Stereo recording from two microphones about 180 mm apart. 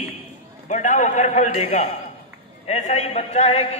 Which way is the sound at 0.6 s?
45° left (ahead or behind).